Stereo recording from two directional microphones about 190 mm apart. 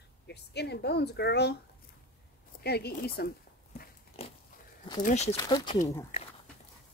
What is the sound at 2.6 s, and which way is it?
Speech, 55° left (ahead or behind).